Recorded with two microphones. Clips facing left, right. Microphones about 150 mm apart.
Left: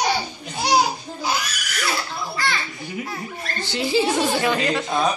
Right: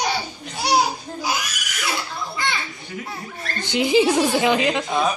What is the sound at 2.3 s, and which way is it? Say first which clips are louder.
Children playing: left 1 dB; 20° right (ahead or behind).